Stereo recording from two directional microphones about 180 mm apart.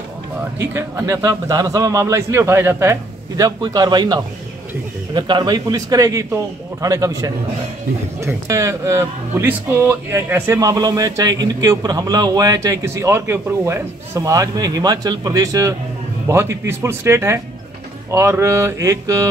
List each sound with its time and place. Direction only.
0.6 s a man's voice: 15° right (ahead or behind)